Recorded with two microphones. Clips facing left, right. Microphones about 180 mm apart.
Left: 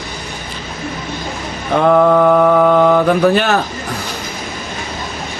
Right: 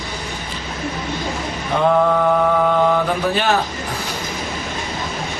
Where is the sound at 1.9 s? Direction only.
60° left (ahead or behind).